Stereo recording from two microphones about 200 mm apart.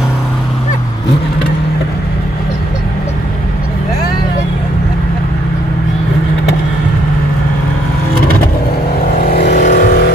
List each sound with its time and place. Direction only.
9.2 s vehicle: 50° left (ahead or behind)